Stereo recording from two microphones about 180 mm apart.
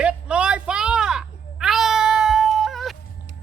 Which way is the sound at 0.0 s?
5° right (ahead or behind).